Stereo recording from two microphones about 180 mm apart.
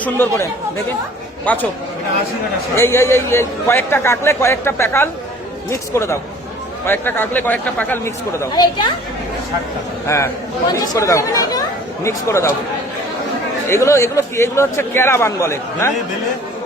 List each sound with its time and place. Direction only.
0.0 s a man's voice: 10° left (ahead or behind)
1.5 s a man's voice: 10° left (ahead or behind)
2.7 s a man's voice: 15° left (ahead or behind)
10.1 s a man's voice: 15° left (ahead or behind)
13.7 s a man's voice: 15° left (ahead or behind)